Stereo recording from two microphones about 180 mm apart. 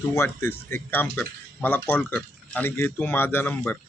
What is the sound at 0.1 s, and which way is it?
Speech, 15° left (ahead or behind).